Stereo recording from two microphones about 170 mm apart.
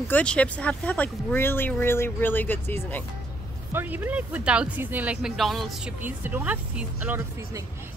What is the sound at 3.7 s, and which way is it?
Speech, 10° right (ahead or behind).